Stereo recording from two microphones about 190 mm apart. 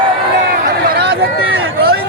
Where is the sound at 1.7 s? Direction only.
55° right (ahead or behind).